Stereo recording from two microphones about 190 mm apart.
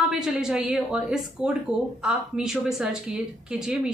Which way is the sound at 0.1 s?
5° right (ahead or behind).